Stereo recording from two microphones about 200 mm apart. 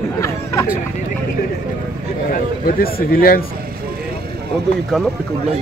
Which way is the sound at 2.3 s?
45° left (ahead or behind).